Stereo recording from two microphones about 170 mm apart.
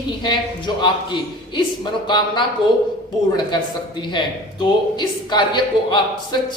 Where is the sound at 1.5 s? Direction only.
25° left (ahead or behind).